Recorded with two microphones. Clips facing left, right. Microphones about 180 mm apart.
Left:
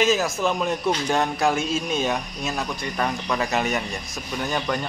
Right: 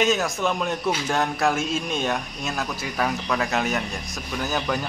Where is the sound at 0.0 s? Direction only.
Centre (ahead or behind).